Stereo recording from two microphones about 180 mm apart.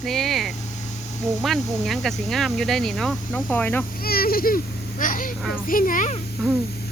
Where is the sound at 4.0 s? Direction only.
55° left (ahead or behind).